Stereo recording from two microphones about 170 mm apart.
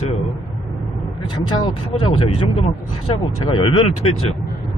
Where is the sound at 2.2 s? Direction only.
35° left (ahead or behind).